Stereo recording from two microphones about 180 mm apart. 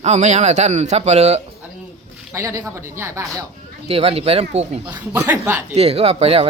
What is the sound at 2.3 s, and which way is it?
Speech, 15° right (ahead or behind).